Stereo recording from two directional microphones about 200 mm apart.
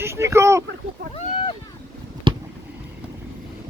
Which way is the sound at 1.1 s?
25° left (ahead or behind).